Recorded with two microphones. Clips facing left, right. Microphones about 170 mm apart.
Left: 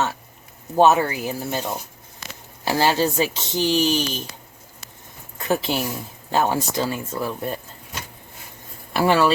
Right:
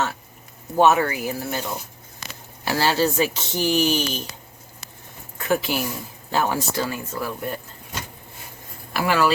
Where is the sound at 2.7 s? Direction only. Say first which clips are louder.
Left 1 dB; 15° left (ahead or behind).